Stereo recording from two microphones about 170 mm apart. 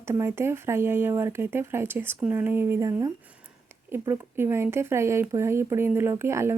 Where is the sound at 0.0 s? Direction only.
15° right (ahead or behind).